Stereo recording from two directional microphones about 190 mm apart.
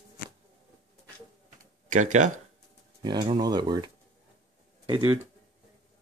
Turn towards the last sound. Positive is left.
turn(degrees=-25)  # may be behind; listen again after turning